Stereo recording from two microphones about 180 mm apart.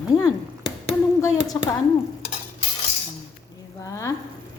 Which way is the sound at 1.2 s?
20° left (ahead or behind).